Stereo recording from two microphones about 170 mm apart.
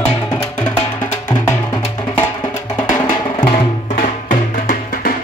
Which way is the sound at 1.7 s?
25° left (ahead or behind).